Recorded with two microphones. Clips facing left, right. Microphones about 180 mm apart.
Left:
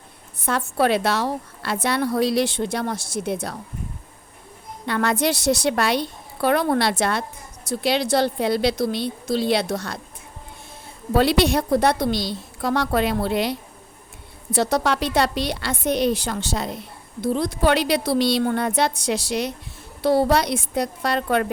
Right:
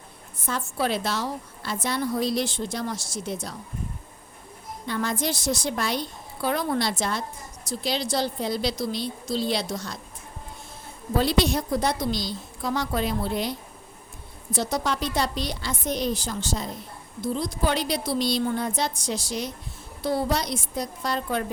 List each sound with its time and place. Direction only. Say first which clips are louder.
0.3 s a woman's voice: left 7 dB; 65° left (ahead or behind)
4.9 s a woman's voice: left 6 dB; 70° left (ahead or behind)
11.1 s a woman's voice: left 5 dB; 70° left (ahead or behind)